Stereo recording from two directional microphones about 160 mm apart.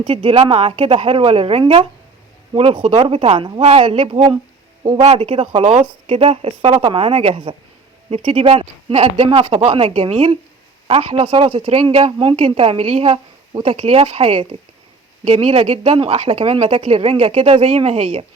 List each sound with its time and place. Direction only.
0.0 s speech: 35° right (ahead or behind)